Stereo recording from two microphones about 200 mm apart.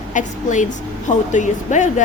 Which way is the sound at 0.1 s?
40° left (ahead or behind).